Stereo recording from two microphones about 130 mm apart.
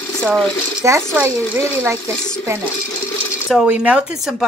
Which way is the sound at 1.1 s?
15° right (ahead or behind).